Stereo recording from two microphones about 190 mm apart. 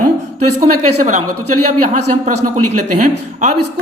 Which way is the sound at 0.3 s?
40° right (ahead or behind).